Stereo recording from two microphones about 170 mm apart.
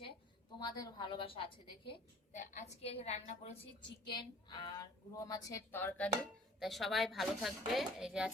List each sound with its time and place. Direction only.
0.6 s a woman's voice: 25° left (ahead or behind)
2.3 s a woman's voice: 45° left (ahead or behind)
4.1 s a woman's voice: 25° left (ahead or behind)
6.6 s speech: centre (ahead or behind)